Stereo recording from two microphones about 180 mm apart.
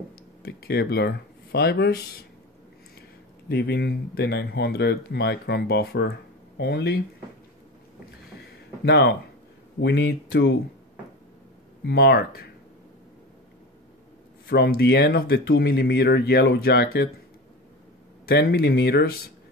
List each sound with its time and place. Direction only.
0.4 s speech: 65° left (ahead or behind)
3.4 s speech: 60° left (ahead or behind)
8.8 s speech: 65° left (ahead or behind)
9.8 s speech: 75° left (ahead or behind)
11.8 s speech: 65° left (ahead or behind)
14.5 s speech: 60° left (ahead or behind)
18.2 s speech: 60° left (ahead or behind)